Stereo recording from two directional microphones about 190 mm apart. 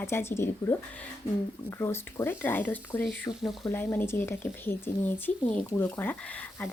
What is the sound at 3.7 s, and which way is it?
Speech, 10° left (ahead or behind).